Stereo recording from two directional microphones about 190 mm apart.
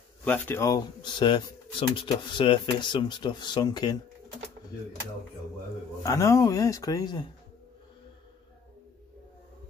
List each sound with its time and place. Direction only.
0.2 s speech: 10° left (ahead or behind)
6.0 s speech: 15° left (ahead or behind)